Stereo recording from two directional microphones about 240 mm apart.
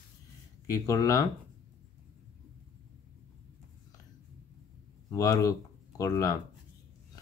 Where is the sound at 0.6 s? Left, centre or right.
Centre.